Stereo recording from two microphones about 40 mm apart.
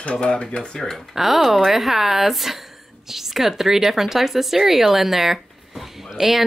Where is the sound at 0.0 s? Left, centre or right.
Left.